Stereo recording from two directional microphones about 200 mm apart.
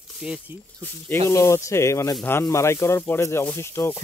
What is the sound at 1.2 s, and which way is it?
Speech, 15° left (ahead or behind).